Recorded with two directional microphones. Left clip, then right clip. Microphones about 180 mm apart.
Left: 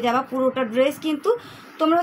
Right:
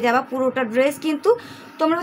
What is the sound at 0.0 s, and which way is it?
A woman's voice, 40° right (ahead or behind).